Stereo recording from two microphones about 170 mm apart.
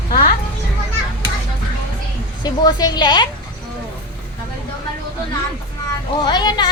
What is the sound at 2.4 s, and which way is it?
Speech, 25° left (ahead or behind).